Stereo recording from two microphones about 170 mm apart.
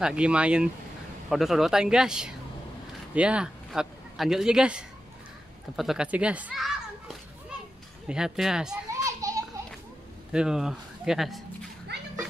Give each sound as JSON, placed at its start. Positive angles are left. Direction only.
{"t": 0.0, "sound": "a child's voice", "side_deg": -5}
{"t": 8.9, "sound": "children playing", "side_deg": -20}
{"t": 10.3, "sound": "speech", "side_deg": -5}